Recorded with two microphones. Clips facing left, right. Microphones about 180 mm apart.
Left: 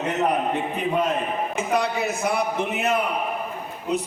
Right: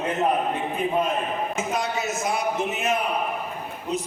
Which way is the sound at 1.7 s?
60° left (ahead or behind).